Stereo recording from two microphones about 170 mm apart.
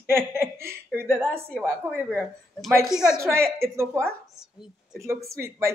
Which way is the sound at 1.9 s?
5° left (ahead or behind).